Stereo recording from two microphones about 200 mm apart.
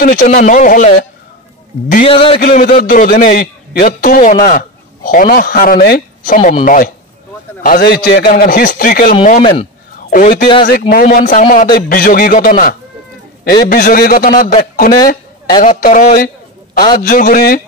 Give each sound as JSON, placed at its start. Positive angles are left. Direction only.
{"t": 0.0, "sound": "a man's voice", "side_deg": 40}
{"t": 2.0, "sound": "speech", "side_deg": 25}
{"t": 2.4, "sound": "a man's voice", "side_deg": 50}
{"t": 9.4, "sound": "speech", "side_deg": 25}
{"t": 9.9, "sound": "a man's voice", "side_deg": 45}